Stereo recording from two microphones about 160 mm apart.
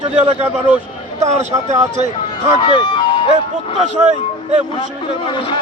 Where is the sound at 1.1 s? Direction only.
45° right (ahead or behind).